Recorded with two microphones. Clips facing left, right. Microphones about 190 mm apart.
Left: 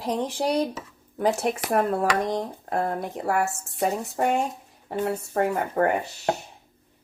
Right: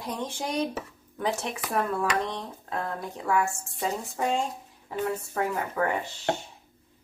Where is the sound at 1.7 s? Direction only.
50° left (ahead or behind).